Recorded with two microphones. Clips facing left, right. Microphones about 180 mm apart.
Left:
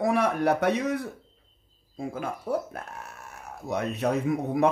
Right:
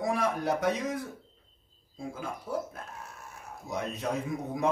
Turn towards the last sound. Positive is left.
turn(degrees=65)  # may be behind; listen again after turning